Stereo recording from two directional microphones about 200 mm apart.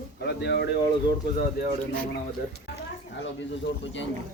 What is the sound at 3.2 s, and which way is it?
Speech, 65° left (ahead or behind).